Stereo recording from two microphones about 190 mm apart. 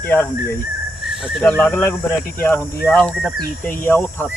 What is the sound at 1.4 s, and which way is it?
Speech, 5° left (ahead or behind).